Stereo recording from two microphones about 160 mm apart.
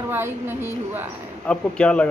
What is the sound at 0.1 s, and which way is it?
Speech, 15° right (ahead or behind).